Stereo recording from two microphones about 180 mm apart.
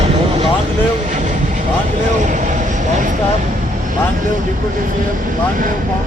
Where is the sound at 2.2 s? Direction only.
45° right (ahead or behind).